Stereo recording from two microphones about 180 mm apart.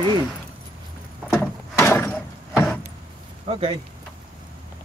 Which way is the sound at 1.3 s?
15° left (ahead or behind).